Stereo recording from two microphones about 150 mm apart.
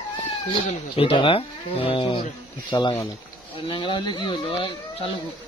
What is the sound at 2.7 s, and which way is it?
Speech, 30° left (ahead or behind).